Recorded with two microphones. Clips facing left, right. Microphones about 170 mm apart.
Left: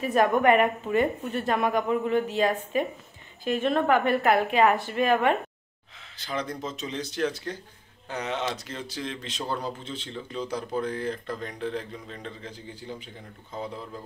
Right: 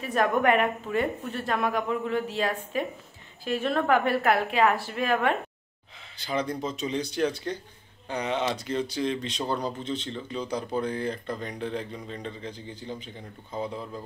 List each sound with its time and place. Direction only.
0.0 s speech: centre (ahead or behind)